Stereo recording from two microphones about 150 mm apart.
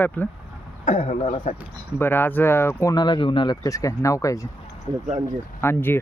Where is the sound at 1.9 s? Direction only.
15° left (ahead or behind).